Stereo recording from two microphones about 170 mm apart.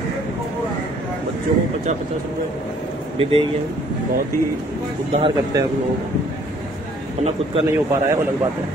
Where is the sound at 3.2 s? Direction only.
35° right (ahead or behind).